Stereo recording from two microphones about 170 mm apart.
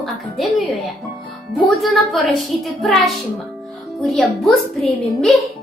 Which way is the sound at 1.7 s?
Centre (ahead or behind).